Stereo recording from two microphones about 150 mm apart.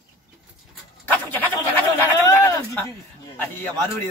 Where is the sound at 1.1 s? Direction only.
10° left (ahead or behind).